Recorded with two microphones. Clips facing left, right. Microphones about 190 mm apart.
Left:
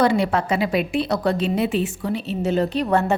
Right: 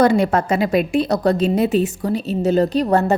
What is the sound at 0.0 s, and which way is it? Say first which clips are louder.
A woman's voice: right 4 dB; 45° right (ahead or behind).